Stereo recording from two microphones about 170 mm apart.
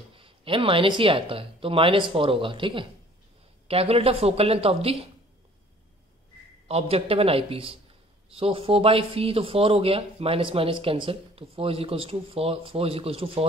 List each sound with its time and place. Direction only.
0.1 s speech: 30° right (ahead or behind)
6.7 s speech: 35° right (ahead or behind)